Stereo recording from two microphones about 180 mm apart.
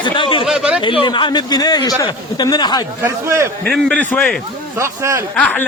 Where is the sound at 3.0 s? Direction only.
15° right (ahead or behind).